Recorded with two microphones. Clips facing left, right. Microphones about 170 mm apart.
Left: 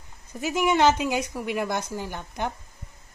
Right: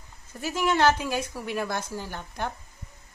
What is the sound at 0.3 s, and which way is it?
Speech, 15° left (ahead or behind).